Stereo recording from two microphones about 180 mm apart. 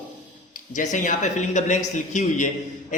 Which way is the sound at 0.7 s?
45° left (ahead or behind).